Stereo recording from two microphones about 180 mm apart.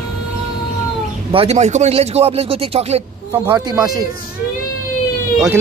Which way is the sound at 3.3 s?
20° right (ahead or behind).